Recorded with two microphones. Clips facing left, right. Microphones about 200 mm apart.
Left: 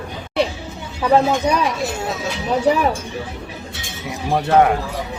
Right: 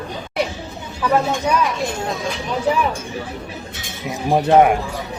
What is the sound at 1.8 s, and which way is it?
Speech, 5° left (ahead or behind).